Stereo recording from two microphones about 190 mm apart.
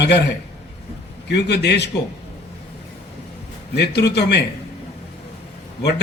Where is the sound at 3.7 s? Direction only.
60° left (ahead or behind).